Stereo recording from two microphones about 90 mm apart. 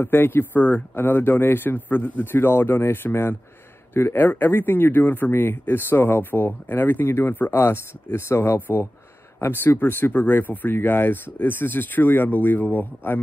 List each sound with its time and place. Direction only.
0.0 s speech: 25° left (ahead or behind)